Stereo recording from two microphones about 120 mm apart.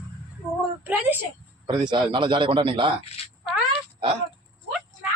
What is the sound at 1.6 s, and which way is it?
A man's voice, 40° right (ahead or behind).